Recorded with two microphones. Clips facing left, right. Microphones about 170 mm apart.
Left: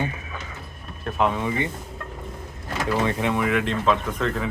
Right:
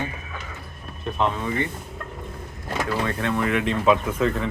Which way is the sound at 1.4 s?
15° left (ahead or behind).